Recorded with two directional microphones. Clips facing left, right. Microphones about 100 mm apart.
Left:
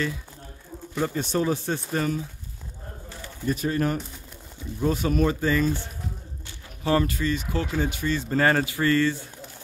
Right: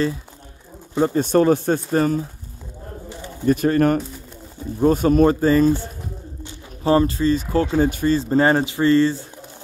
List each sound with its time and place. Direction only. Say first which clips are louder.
0.9 s speech: right 8 dB; 30° right (ahead or behind)
1.2 s speech: right 9 dB; 55° right (ahead or behind)
1.9 s speech: right 7 dB; 40° right (ahead or behind)
3.4 s speech: right 9 dB; 55° right (ahead or behind)
4.7 s speech: right 8 dB; 45° right (ahead or behind); by 9.2 s 30° right (ahead or behind)